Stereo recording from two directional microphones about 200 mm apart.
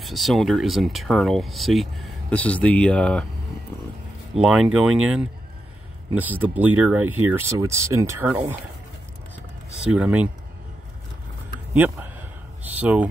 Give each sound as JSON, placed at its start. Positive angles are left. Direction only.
{"t": 0.0, "sound": "speech", "side_deg": 0}
{"t": 4.4, "sound": "speech", "side_deg": 0}
{"t": 9.9, "sound": "speech", "side_deg": -5}
{"t": 11.7, "sound": "a sound", "side_deg": -10}